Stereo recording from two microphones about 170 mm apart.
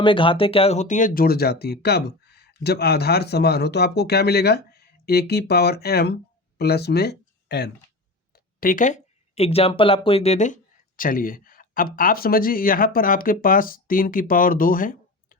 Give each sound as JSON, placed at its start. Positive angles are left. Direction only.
{"t": 0.0, "sound": "speech", "side_deg": 30}
{"t": 8.6, "sound": "speech", "side_deg": 50}